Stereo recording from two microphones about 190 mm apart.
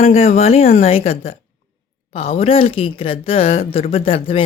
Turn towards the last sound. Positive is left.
turn(degrees=30)  # may be behind; listen again after turning